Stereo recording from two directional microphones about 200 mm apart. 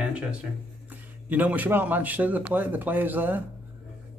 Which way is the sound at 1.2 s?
10° right (ahead or behind).